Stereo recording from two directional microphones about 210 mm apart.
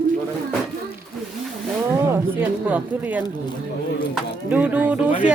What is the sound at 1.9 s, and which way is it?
Speech, 10° right (ahead or behind).